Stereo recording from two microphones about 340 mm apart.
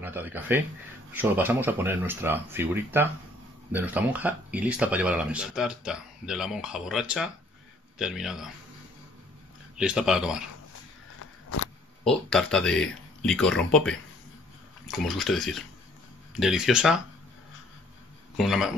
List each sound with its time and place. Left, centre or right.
0.0 s speech: centre
9.8 s speech: centre
11.1 s a sound: left
12.0 s speech: centre
18.4 s speech: centre